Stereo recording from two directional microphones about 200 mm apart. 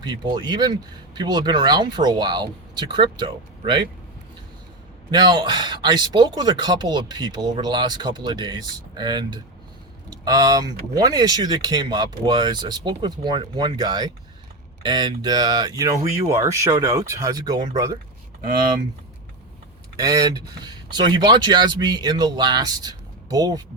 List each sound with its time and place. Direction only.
0.0 s speech: 20° right (ahead or behind)
5.1 s speech: 20° right (ahead or behind)
20.0 s speech: 15° right (ahead or behind)